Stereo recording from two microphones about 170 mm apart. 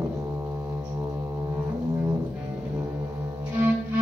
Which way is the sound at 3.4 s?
10° right (ahead or behind).